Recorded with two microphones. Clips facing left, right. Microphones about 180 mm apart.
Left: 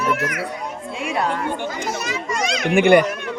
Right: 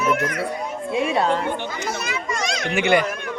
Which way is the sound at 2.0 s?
40° left (ahead or behind).